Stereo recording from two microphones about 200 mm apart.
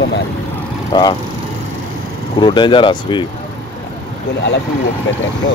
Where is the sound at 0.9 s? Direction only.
20° left (ahead or behind).